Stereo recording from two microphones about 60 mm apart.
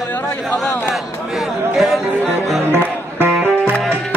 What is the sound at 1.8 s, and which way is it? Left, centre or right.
Music, centre.